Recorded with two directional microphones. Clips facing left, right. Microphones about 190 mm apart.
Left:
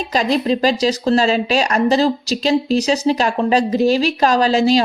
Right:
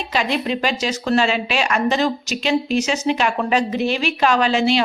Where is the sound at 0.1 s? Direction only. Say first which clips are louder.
Left 5 dB; 35° left (ahead or behind).